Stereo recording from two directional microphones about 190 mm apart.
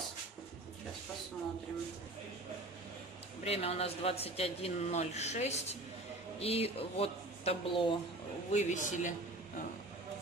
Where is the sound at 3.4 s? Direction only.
30° left (ahead or behind).